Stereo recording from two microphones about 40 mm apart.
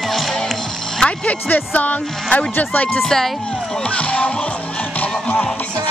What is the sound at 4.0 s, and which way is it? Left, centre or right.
Speech, left.